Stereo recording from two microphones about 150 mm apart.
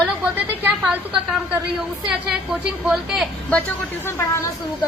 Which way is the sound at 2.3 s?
5° right (ahead or behind).